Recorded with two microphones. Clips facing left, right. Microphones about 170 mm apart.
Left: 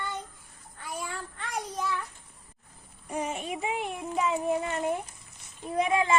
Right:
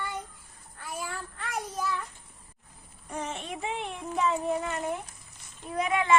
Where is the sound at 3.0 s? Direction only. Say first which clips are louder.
Left 3 dB; 10° left (ahead or behind).